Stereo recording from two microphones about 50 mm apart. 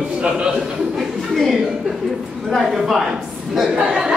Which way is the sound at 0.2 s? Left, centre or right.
Centre.